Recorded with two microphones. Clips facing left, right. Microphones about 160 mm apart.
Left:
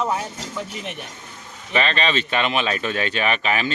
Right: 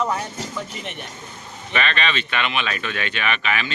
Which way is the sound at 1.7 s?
35° left (ahead or behind).